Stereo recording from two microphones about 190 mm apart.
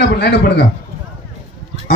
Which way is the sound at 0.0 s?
60° left (ahead or behind).